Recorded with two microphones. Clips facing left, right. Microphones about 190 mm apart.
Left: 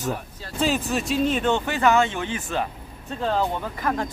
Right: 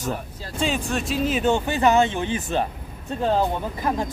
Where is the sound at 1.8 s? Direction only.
20° right (ahead or behind).